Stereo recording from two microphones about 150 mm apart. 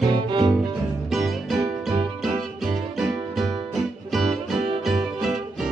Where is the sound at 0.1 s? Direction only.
30° right (ahead or behind).